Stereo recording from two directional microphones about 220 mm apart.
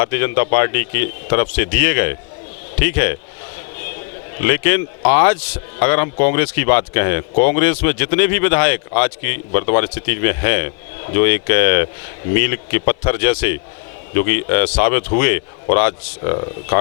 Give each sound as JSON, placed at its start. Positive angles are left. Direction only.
{"t": 0.0, "sound": "speech", "side_deg": 15}
{"t": 4.4, "sound": "speech", "side_deg": 15}
{"t": 16.3, "sound": "speech", "side_deg": 25}